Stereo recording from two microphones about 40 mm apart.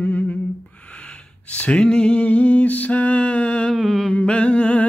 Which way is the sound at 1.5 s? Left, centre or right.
Left.